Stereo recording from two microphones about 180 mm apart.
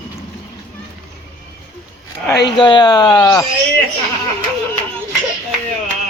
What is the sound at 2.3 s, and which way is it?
Speech, 70° left (ahead or behind).